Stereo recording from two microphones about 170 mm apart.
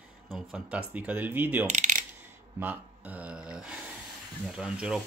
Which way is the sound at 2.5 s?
10° right (ahead or behind).